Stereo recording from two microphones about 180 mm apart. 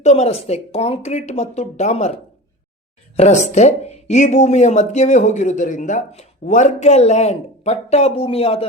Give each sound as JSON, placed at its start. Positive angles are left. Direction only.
{"t": 0.0, "sound": "speech", "side_deg": 40}
{"t": 3.2, "sound": "speech", "side_deg": 40}